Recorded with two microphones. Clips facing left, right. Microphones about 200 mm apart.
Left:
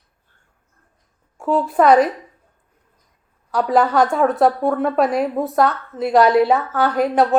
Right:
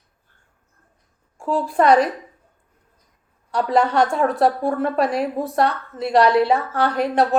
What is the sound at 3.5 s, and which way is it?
A woman's voice, 5° left (ahead or behind).